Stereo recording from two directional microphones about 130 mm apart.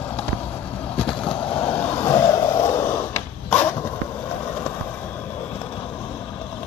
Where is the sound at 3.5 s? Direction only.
15° left (ahead or behind).